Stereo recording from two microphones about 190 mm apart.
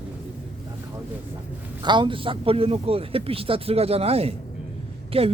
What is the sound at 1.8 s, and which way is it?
A man's voice, 25° right (ahead or behind).